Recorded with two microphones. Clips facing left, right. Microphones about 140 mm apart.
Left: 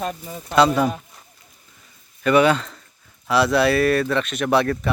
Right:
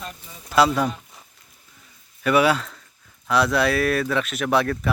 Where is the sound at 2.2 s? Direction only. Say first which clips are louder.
Left 2 dB; 5° right (ahead or behind).